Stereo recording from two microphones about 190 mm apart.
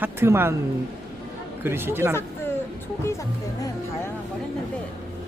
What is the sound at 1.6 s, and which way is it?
Speech, 10° right (ahead or behind).